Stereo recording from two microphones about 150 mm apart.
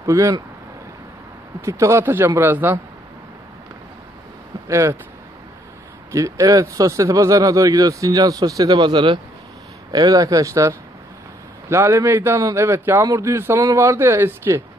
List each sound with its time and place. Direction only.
0.0 s speech: 20° right (ahead or behind)
1.6 s speech: 20° right (ahead or behind)
4.6 s speech: 20° right (ahead or behind)
6.1 s speech: 20° right (ahead or behind)
11.7 s speech: 20° right (ahead or behind)